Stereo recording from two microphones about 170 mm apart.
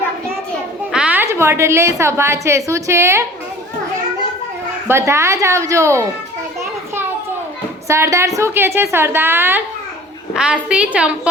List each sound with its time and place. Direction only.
0.9 s a woman's voice: 10° right (ahead or behind)
4.9 s a woman's voice: 15° right (ahead or behind)
7.9 s a woman's voice: 15° right (ahead or behind)